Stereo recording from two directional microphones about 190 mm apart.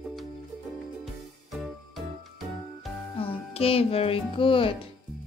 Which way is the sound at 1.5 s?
Centre (ahead or behind).